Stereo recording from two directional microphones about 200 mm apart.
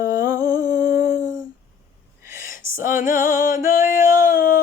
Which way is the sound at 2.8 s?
40° left (ahead or behind).